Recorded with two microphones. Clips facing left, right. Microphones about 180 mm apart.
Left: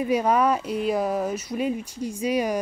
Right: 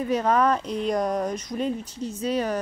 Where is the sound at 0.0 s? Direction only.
10° left (ahead or behind).